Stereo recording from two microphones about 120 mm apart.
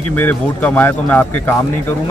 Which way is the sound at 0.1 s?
15° left (ahead or behind).